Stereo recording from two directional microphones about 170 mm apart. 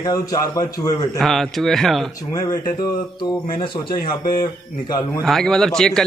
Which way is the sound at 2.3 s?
20° left (ahead or behind).